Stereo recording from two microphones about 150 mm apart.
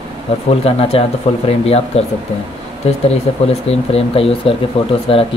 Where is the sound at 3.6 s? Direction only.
40° left (ahead or behind).